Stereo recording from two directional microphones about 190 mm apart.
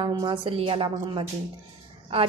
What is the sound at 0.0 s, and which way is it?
A woman's voice, 25° right (ahead or behind).